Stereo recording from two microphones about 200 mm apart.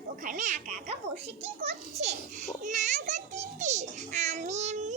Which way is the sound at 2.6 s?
35° right (ahead or behind).